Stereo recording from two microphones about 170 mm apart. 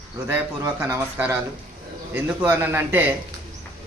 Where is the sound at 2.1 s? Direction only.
10° right (ahead or behind).